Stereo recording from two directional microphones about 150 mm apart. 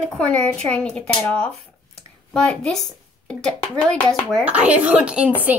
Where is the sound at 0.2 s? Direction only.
5° left (ahead or behind).